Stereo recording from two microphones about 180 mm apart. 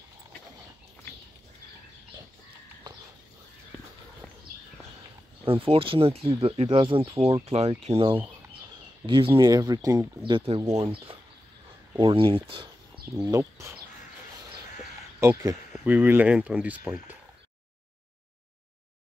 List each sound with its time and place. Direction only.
5.4 s speech: 30° right (ahead or behind)
13.2 s speech: 15° right (ahead or behind)
15.1 s speech: 15° right (ahead or behind)